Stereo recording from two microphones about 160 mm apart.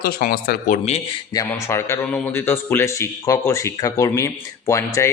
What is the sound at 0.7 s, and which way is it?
Speech, 45° left (ahead or behind).